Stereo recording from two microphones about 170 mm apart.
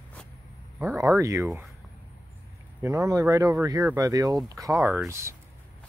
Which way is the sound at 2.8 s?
20° right (ahead or behind).